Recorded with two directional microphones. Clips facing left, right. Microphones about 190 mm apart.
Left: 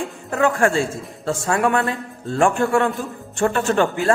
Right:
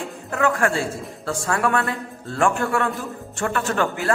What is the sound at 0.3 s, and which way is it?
Speech, 25° left (ahead or behind).